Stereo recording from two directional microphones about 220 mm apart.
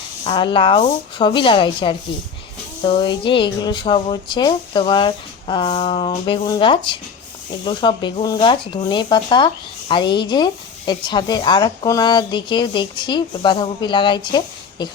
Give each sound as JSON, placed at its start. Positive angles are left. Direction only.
{"t": 0.3, "sound": "speech", "side_deg": 20}